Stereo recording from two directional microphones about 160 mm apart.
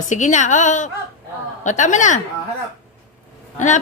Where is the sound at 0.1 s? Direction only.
50° left (ahead or behind).